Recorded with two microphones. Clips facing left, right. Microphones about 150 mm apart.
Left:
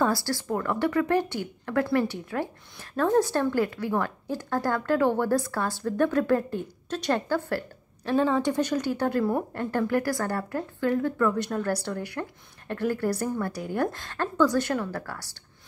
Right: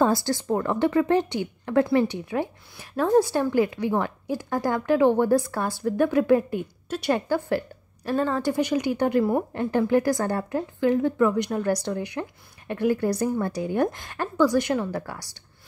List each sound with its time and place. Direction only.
0.0 s a woman's voice: 20° right (ahead or behind)
8.1 s a woman's voice: centre (ahead or behind)